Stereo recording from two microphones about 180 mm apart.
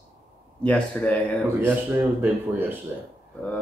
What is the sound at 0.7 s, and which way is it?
Speech, 5° left (ahead or behind).